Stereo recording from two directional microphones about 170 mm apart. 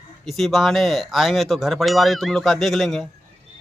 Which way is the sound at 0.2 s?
Centre (ahead or behind).